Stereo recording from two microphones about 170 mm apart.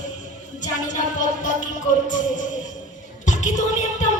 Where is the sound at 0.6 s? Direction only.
45° left (ahead or behind).